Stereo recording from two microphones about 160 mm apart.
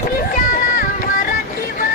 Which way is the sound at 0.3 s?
60° left (ahead or behind).